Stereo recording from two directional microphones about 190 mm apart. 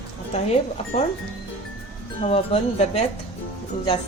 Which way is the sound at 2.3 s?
35° left (ahead or behind).